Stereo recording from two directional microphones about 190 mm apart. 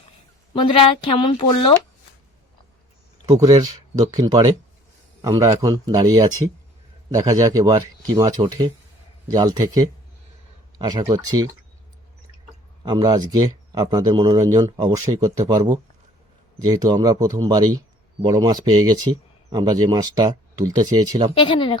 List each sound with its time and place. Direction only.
0.5 s speech: 25° left (ahead or behind)
3.2 s a man's voice: 20° right (ahead or behind)
12.8 s speech: 20° right (ahead or behind)
21.3 s speech: 25° left (ahead or behind)